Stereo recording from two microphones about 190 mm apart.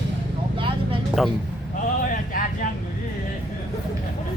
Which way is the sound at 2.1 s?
45° left (ahead or behind).